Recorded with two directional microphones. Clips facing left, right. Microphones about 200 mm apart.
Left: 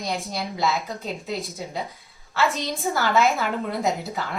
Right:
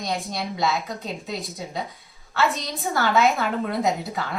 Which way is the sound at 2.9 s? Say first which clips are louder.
Right 1 dB; centre (ahead or behind).